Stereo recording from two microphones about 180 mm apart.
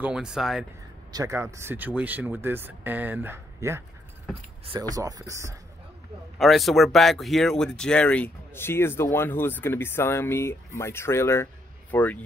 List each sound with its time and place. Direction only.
0.0 s speech: 5° right (ahead or behind)
1.1 s speech: 15° right (ahead or behind)
6.3 s speech: centre (ahead or behind)